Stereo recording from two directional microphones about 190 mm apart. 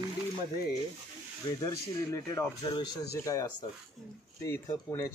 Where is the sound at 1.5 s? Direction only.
20° left (ahead or behind).